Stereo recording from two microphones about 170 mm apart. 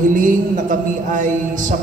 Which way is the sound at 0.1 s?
50° right (ahead or behind).